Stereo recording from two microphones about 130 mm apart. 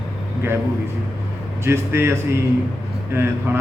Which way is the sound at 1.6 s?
20° right (ahead or behind).